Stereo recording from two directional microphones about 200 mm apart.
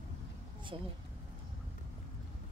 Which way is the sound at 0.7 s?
25° right (ahead or behind).